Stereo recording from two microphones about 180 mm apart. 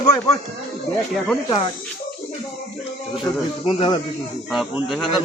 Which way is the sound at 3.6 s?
35° left (ahead or behind).